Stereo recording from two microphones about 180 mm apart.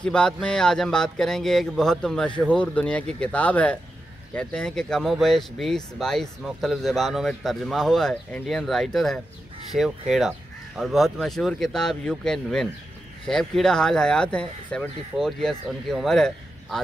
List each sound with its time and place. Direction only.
0.0 s speech: 5° left (ahead or behind)